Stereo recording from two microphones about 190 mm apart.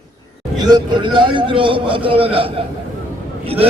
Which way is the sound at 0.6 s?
20° right (ahead or behind).